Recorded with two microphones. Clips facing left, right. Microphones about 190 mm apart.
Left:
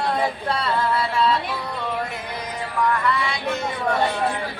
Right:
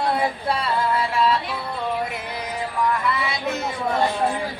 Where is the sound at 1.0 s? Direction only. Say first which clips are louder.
Even; 10° right (ahead or behind).